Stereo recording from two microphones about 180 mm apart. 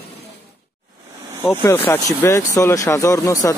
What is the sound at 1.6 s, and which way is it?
Speech, 10° left (ahead or behind).